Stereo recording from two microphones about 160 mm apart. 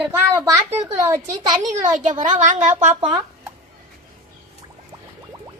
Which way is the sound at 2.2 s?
50° right (ahead or behind).